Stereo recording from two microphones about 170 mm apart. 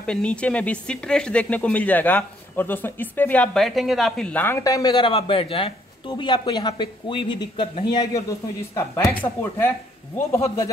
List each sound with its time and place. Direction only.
0.0 s speech: 5° left (ahead or behind); by 8.1 s 30° left (ahead or behind)
8.7 s speech: 15° left (ahead or behind)